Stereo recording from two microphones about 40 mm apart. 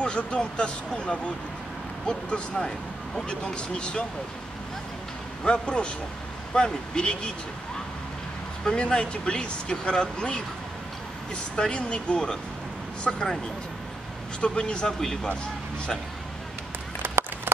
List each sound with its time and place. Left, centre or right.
0.0 s speech: left
5.4 s speech: left
8.6 s speech: left
14.4 s speech: left
17.0 s a sound: right